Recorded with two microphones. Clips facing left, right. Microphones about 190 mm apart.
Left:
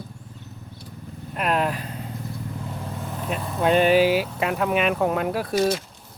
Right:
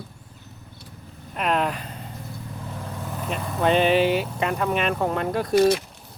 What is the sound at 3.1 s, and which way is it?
Speech, 5° left (ahead or behind).